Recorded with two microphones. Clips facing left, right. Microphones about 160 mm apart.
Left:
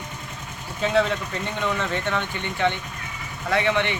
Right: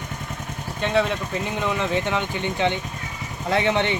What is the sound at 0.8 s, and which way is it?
Speech, centre (ahead or behind).